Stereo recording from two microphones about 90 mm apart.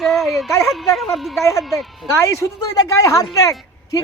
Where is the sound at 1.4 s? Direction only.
35° left (ahead or behind).